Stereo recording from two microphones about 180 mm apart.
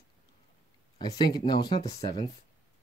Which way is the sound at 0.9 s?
25° left (ahead or behind).